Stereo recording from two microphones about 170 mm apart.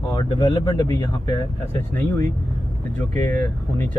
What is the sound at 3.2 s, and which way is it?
Speech, 15° left (ahead or behind).